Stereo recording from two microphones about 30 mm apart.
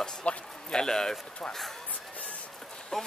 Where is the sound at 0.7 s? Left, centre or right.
Left.